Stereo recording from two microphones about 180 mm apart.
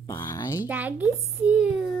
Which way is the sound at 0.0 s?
15° left (ahead or behind).